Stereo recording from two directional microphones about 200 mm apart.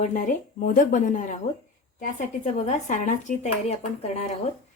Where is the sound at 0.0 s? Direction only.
40° left (ahead or behind).